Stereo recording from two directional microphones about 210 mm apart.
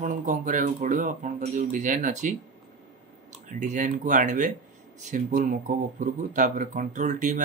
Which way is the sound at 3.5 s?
35° right (ahead or behind).